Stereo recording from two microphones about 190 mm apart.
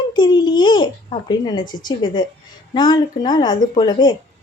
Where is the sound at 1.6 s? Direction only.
45° left (ahead or behind).